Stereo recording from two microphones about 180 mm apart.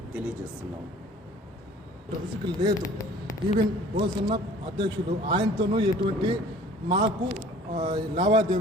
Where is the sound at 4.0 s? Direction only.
25° right (ahead or behind).